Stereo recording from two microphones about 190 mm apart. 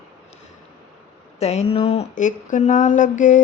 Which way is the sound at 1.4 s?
35° left (ahead or behind).